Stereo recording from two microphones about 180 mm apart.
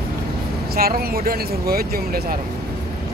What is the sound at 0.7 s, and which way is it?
Speech, 55° right (ahead or behind).